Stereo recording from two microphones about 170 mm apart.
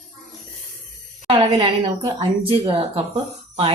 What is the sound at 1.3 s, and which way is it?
A woman's voice, 30° right (ahead or behind).